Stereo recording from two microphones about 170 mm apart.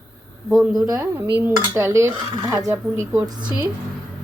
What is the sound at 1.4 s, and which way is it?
Dishes, 15° right (ahead or behind).